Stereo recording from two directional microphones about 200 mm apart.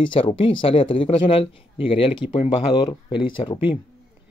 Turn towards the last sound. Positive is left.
turn(degrees=25)  # may be behind; listen again after turning